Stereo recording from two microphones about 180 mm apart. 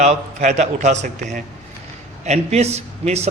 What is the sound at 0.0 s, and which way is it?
A man's voice, 40° right (ahead or behind).